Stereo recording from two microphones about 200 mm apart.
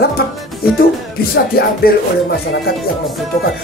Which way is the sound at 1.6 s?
50° left (ahead or behind).